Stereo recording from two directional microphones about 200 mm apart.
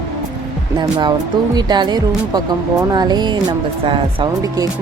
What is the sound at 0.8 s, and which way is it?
Speech, 20° right (ahead or behind).